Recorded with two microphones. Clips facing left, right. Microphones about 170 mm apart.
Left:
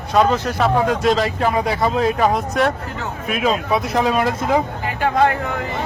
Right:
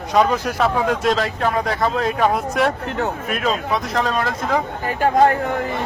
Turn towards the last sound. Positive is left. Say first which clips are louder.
# right 2 dB
turn(degrees=-40)  # may be behind; listen again after turning